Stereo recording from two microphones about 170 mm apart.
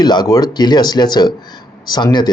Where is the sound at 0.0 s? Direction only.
25° left (ahead or behind).